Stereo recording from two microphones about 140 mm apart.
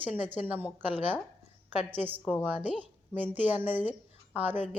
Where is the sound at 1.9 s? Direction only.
15° right (ahead or behind).